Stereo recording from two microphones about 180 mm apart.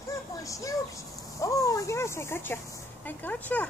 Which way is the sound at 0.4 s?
20° left (ahead or behind).